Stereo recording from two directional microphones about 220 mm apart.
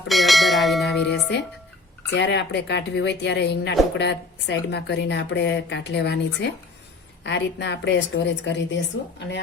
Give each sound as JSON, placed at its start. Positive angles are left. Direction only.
{"t": 0.1, "sound": "bell", "side_deg": 0}
{"t": 2.0, "sound": "speech", "side_deg": 50}